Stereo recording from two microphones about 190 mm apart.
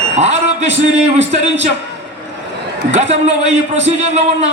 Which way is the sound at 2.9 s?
35° right (ahead or behind).